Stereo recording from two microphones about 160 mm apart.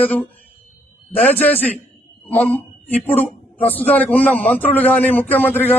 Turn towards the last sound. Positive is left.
turn(degrees=10)  # may be behind; listen again after turning